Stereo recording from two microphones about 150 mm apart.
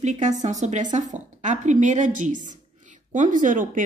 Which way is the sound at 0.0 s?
55° right (ahead or behind).